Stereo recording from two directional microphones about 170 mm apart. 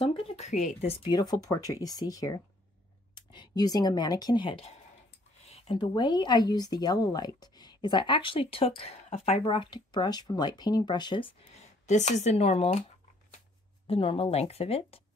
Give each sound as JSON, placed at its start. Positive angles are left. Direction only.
{"t": 0.0, "sound": "speech", "side_deg": 35}
{"t": 1.0, "sound": "speech", "side_deg": 25}
{"t": 5.8, "sound": "speech", "side_deg": 25}
{"t": 11.8, "sound": "speech", "side_deg": 45}
{"t": 13.8, "sound": "speech", "side_deg": 35}